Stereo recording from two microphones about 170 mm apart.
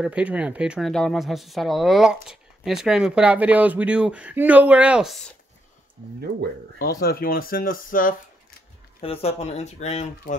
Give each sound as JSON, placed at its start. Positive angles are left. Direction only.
{"t": 0.0, "sound": "speech", "side_deg": -5}
{"t": 6.8, "sound": "speech", "side_deg": 60}
{"t": 9.0, "sound": "speech", "side_deg": 35}